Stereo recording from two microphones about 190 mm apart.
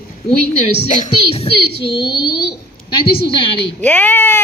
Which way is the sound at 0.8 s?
30° left (ahead or behind).